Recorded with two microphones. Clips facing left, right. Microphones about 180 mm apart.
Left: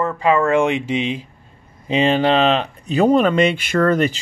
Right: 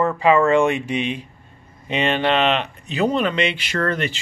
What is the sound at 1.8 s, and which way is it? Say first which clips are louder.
Speech: left 4 dB; 30° left (ahead or behind).